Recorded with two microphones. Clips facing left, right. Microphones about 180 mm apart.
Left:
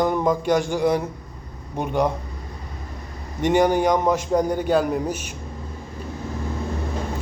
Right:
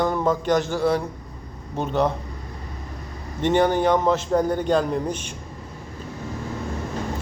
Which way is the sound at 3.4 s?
10° left (ahead or behind).